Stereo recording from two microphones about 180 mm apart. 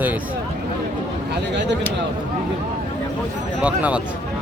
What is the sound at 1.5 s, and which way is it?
Speech, 75° right (ahead or behind).